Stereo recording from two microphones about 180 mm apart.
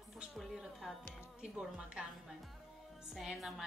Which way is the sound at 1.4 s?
5° right (ahead or behind).